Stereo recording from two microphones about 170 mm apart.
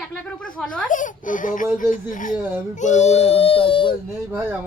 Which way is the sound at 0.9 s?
50° left (ahead or behind).